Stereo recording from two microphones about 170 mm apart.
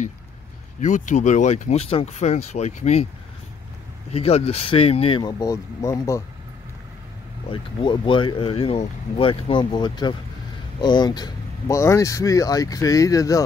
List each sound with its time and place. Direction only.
0.7 s speech: 45° left (ahead or behind)
4.1 s speech: 35° left (ahead or behind); by 6.2 s 20° left (ahead or behind)
7.4 s speech: 30° left (ahead or behind)